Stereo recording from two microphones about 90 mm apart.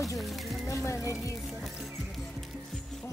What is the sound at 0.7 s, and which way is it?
Speech, 30° left (ahead or behind).